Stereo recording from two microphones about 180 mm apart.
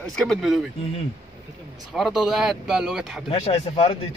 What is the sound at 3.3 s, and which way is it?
Speech, 30° left (ahead or behind).